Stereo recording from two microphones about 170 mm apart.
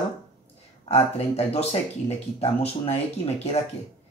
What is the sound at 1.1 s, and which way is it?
Speech, 35° left (ahead or behind).